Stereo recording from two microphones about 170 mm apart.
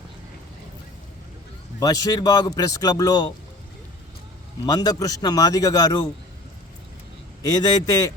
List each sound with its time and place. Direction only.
1.8 s a man's voice: 20° left (ahead or behind)
4.6 s a man's voice: 20° left (ahead or behind)
7.4 s a man's voice: 20° left (ahead or behind)